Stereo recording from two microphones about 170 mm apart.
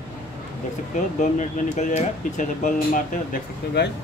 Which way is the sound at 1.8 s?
45° left (ahead or behind).